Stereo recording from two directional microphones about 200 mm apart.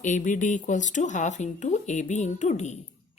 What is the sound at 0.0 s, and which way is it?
Speech, 40° left (ahead or behind).